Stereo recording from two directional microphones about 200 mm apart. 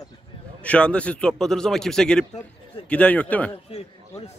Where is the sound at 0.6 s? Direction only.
5° left (ahead or behind).